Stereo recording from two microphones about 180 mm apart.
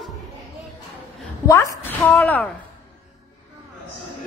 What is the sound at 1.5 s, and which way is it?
A woman's voice, 15° left (ahead or behind).